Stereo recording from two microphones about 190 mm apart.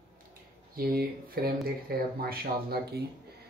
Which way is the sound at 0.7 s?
50° right (ahead or behind).